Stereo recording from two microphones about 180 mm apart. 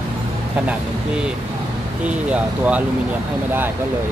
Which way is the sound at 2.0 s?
5° right (ahead or behind).